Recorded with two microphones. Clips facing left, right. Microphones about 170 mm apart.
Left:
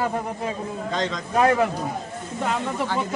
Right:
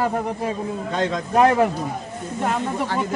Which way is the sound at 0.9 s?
55° right (ahead or behind).